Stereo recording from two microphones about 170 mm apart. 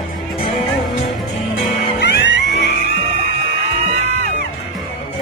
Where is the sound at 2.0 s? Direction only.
80° left.